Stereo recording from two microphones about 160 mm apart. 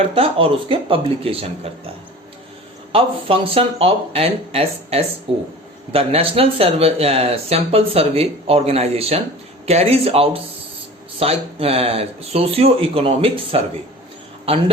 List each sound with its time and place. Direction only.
0.0 s speech: 35° right (ahead or behind)
2.9 s speech: 35° right (ahead or behind)